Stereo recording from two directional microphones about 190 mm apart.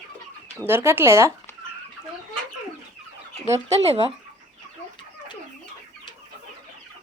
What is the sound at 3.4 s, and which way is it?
Speech, 35° right (ahead or behind).